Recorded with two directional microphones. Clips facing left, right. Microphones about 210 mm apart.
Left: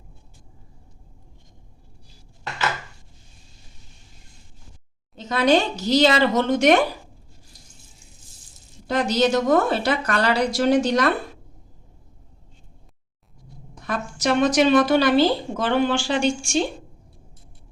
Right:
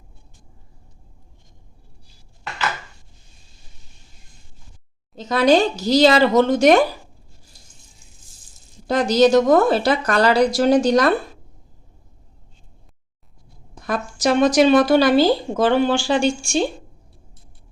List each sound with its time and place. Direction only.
5.1 s speech: 40° right (ahead or behind)
8.9 s speech: 40° right (ahead or behind)
13.8 s speech: 40° right (ahead or behind)